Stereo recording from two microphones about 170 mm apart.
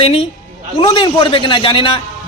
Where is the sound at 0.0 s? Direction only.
35° left (ahead or behind).